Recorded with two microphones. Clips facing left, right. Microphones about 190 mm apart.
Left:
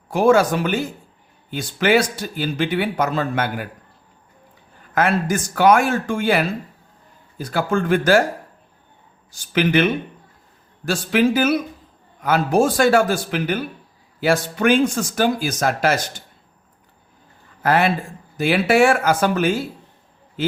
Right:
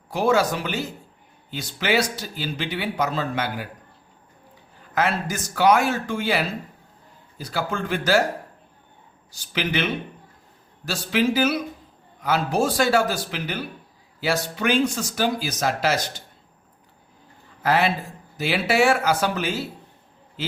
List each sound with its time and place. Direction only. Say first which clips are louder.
0.1 s speech: left 5 dB; 50° left (ahead or behind)
4.9 s speech: left 5 dB; 50° left (ahead or behind)
9.3 s speech: left 8 dB; 50° left (ahead or behind)
17.6 s speech: left 3 dB; 50° left (ahead or behind)